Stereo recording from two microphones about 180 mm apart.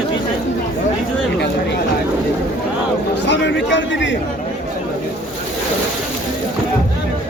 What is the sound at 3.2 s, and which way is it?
Speech, 80° left.